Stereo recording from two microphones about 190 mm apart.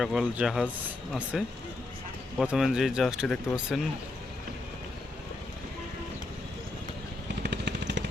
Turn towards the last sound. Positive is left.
turn(degrees=-65)  # may be behind; listen again after turning